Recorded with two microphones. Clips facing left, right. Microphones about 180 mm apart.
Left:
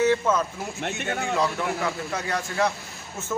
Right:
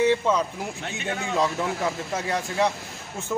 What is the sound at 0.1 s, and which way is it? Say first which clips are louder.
Speech: even; 20° right (ahead or behind).